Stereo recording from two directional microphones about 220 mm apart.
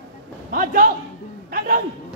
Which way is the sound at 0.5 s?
35° right (ahead or behind).